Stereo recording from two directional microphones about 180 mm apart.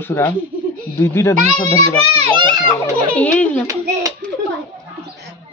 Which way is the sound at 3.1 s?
5° left (ahead or behind).